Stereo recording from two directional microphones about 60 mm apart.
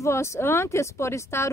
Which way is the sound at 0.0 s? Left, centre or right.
Left.